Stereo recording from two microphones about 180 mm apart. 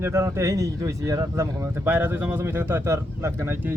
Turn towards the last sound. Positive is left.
turn(degrees=-10)  # may be behind; listen again after turning